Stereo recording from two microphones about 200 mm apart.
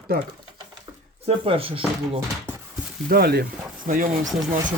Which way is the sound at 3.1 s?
50° right (ahead or behind).